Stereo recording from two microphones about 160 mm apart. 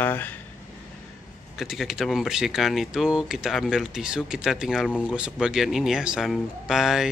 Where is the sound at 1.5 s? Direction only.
Centre (ahead or behind).